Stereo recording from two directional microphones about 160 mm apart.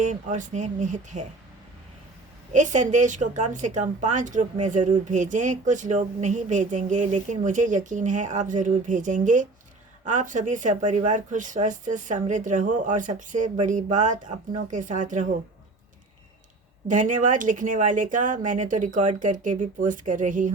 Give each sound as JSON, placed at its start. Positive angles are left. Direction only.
{"t": 0.0, "sound": "speech", "side_deg": -50}
{"t": 2.5, "sound": "speech", "side_deg": -50}
{"t": 16.9, "sound": "speech", "side_deg": -55}